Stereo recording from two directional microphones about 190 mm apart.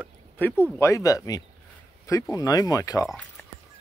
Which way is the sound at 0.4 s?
10° left (ahead or behind).